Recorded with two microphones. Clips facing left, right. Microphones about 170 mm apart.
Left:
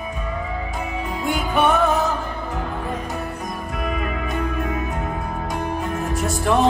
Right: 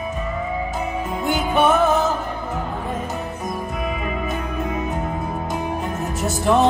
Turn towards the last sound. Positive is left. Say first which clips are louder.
# right 1 dB
turn(degrees=0)  # may be behind; listen again after turning